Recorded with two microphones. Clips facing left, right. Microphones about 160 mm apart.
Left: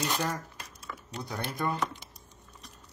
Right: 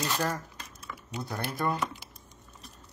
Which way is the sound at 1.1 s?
5° right (ahead or behind).